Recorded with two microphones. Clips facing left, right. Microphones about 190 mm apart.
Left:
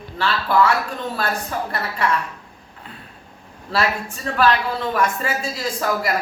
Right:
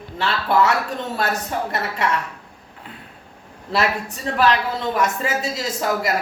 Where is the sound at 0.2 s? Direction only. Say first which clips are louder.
Even; 25° right (ahead or behind).